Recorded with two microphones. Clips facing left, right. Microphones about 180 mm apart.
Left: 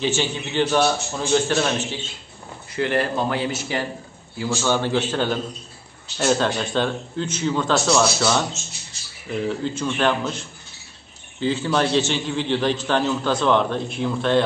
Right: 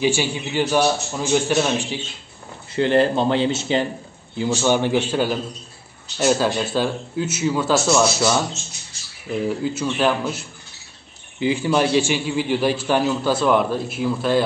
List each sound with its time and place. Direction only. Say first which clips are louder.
0.0 s a man's voice: right 3 dB; 10° right (ahead or behind)
2.7 s a man's voice: right 5 dB; 30° right (ahead or behind); by 8.4 s 5° right (ahead or behind)
9.5 s a man's voice: right 2 dB; 5° right (ahead or behind)